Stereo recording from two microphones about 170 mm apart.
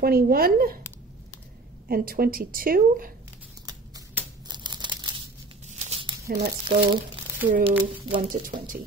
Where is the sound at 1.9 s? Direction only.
60° right (ahead or behind).